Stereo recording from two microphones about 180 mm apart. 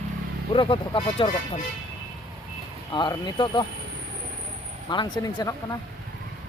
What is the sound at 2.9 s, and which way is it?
Speech, 25° left (ahead or behind).